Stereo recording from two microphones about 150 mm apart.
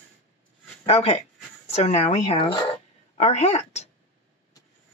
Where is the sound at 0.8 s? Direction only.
45° left (ahead or behind).